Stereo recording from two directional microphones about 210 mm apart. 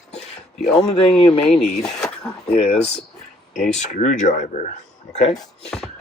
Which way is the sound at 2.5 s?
25° left (ahead or behind).